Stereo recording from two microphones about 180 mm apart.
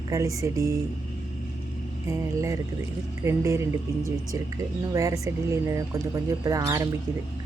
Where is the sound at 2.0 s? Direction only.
15° right (ahead or behind).